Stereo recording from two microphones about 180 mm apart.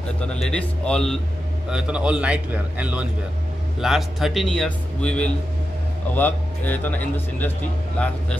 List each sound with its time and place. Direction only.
0.3 s a man's voice: 5° left (ahead or behind)